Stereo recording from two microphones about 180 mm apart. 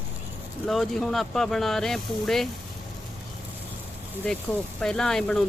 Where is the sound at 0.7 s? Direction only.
Centre (ahead or behind).